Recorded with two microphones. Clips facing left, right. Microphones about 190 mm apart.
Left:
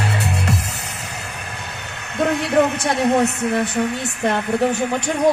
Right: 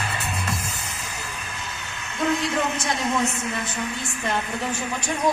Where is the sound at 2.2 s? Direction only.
60° left (ahead or behind).